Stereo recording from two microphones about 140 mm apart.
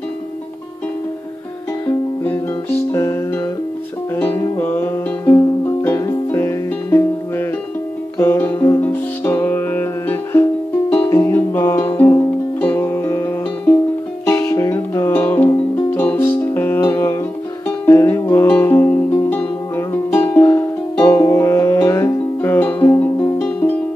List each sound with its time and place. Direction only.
2.2 s music: 15° left (ahead or behind)